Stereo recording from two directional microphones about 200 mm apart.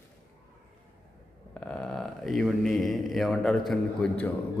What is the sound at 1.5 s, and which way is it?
A man's voice, 5° left (ahead or behind).